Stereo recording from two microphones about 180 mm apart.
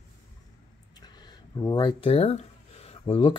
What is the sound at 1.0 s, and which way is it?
Speech, 25° left (ahead or behind).